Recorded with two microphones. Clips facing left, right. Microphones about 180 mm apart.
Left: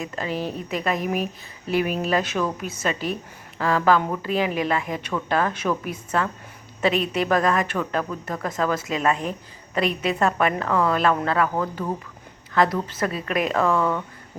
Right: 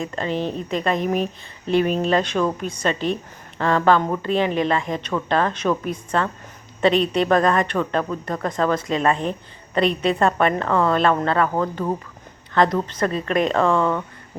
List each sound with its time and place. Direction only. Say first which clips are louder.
0.2 s a woman's voice: right 3 dB; 5° left (ahead or behind)
11.4 s speech: right 3 dB; 25° right (ahead or behind)
12.5 s a woman's voice: right 2 dB; 5° left (ahead or behind)